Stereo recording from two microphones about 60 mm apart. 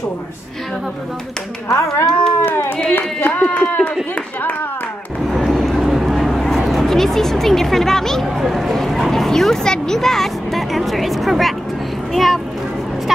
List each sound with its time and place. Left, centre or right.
1.7 s speech: left
2.4 s speech: left
5.3 s vehicle: centre
6.7 s a child's voice: centre